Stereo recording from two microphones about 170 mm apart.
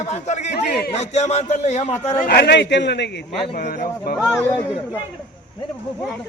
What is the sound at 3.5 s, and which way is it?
Speech, 55° left (ahead or behind).